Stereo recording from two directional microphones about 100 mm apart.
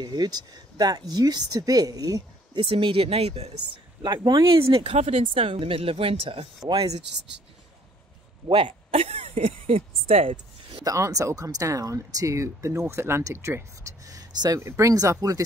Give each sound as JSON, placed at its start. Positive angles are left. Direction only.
{"t": 0.0, "sound": "speech", "side_deg": -45}
{"t": 2.6, "sound": "speech", "side_deg": -65}
{"t": 4.0, "sound": "speech", "side_deg": -45}
{"t": 8.5, "sound": "speech", "side_deg": -65}
{"t": 10.8, "sound": "speech", "side_deg": -35}